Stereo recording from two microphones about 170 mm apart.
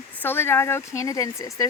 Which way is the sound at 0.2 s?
15° left (ahead or behind).